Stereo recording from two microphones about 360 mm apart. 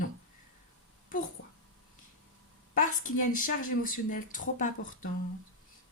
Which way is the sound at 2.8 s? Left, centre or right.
Left.